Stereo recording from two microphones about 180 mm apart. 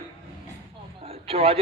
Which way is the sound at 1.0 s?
30° right (ahead or behind).